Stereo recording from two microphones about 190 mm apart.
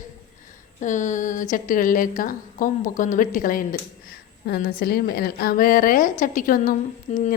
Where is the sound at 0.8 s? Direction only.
40° left (ahead or behind).